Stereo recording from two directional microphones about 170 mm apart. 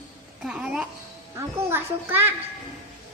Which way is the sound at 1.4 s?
15° right (ahead or behind).